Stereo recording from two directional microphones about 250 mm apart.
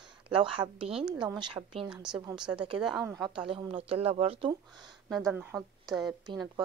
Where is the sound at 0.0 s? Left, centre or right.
Centre.